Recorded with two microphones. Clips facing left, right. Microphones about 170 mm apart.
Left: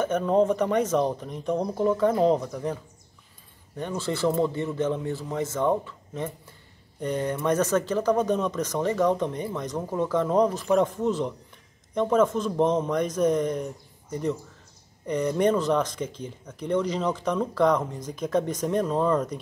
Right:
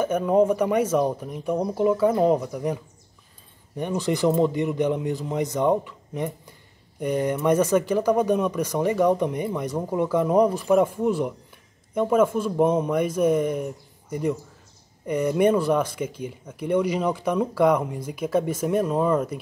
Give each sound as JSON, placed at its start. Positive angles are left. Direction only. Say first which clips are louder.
{"t": 0.0, "sound": "speech", "louder": "right 2 dB", "side_deg": -10}
{"t": 15.0, "sound": "speech", "louder": "right 3 dB", "side_deg": -10}